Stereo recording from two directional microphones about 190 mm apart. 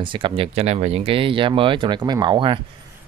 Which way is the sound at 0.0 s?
25° right (ahead or behind).